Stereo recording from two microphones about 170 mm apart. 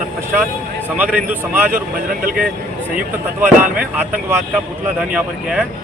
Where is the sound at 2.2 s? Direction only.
55° right (ahead or behind).